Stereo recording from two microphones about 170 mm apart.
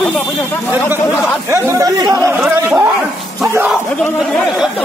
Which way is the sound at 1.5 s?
15° right (ahead or behind).